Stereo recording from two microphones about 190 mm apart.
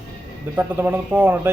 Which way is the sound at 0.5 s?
10° right (ahead or behind).